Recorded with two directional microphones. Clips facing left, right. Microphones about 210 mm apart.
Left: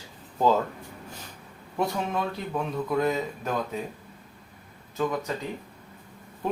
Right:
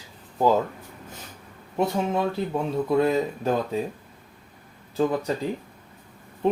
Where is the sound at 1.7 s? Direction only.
25° right (ahead or behind).